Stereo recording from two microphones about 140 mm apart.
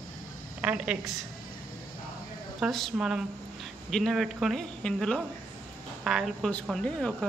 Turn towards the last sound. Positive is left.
turn(degrees=5)  # may be behind; listen again after turning